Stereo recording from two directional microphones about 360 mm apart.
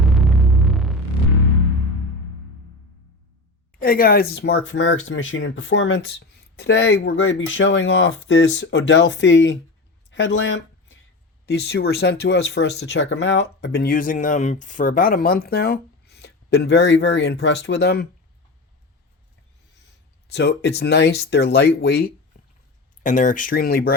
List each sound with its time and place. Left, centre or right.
0.0 s hum: centre
3.8 s speech: left
20.2 s speech: left